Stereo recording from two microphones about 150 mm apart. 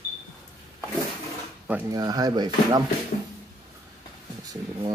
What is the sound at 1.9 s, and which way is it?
Speech, 25° right (ahead or behind).